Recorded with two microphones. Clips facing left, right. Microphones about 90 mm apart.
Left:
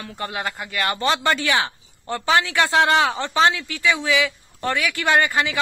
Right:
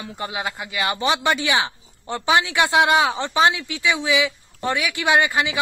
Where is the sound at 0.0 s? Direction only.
15° right (ahead or behind).